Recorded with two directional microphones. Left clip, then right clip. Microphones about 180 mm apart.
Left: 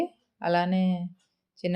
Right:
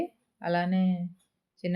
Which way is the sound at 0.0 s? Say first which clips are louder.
Left 4 dB; 25° left (ahead or behind).